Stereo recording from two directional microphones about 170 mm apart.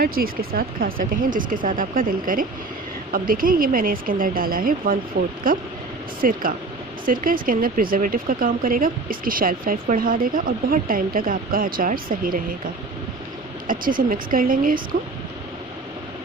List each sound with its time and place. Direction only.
0.0 s speech: 60° right (ahead or behind)
5.2 s speech: 70° right (ahead or behind)
6.2 s speech: 55° right (ahead or behind)
13.7 s speech: 55° right (ahead or behind)